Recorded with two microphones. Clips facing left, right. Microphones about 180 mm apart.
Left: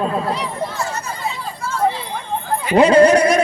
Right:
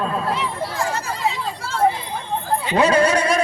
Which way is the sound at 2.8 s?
15° left (ahead or behind).